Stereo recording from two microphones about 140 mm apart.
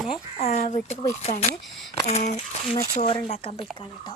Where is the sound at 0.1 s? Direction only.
50° left (ahead or behind).